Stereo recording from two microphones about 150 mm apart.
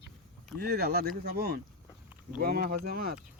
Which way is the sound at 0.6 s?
90° right.